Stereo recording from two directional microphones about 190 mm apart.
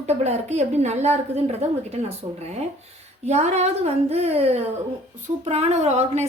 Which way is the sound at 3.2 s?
35° right (ahead or behind).